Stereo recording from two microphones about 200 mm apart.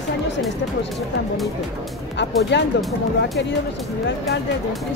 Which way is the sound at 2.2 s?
60° left (ahead or behind).